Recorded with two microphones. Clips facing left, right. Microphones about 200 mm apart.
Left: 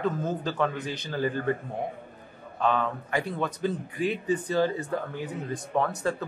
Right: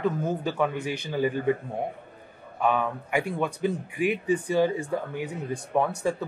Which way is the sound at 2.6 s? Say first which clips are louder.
Right 1 dB; 15° right (ahead or behind).